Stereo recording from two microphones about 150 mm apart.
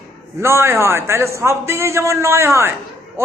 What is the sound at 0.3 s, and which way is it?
A man's voice, 15° right (ahead or behind).